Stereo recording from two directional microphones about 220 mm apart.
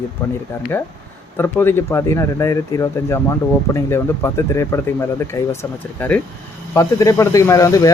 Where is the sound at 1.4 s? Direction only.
10° left (ahead or behind).